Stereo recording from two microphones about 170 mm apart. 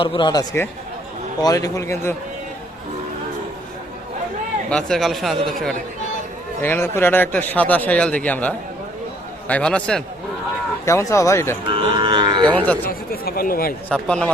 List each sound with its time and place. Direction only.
0.0 s speech: 30° left (ahead or behind)
4.7 s speech: centre (ahead or behind)
6.6 s speech: 15° left (ahead or behind)
10.8 s speech: 15° left (ahead or behind)
11.6 s cattle: 30° right (ahead or behind)
12.9 s a sound: 60° left (ahead or behind)
13.9 s speech: 5° left (ahead or behind)